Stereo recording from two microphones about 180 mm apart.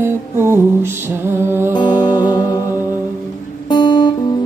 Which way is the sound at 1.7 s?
20° left (ahead or behind).